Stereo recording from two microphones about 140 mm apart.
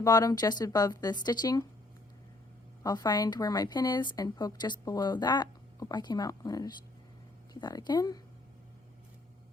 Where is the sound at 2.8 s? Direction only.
30° left (ahead or behind).